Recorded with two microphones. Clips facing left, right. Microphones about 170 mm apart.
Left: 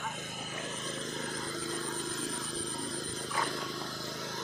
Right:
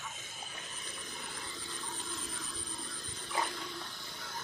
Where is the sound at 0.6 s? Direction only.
90° left.